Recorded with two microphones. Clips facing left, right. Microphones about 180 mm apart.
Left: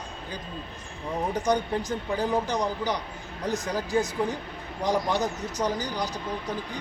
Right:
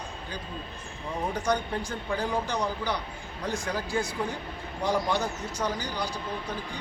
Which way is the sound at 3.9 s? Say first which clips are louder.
Left 6 dB; 10° right (ahead or behind).